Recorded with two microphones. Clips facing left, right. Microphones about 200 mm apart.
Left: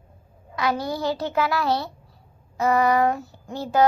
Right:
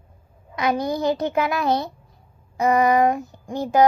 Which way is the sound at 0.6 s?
20° right (ahead or behind).